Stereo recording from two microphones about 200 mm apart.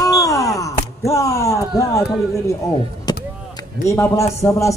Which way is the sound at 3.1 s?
20° left (ahead or behind).